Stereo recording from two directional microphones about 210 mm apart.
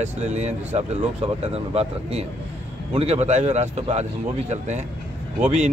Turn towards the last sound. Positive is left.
turn(degrees=-30)  # may be behind; listen again after turning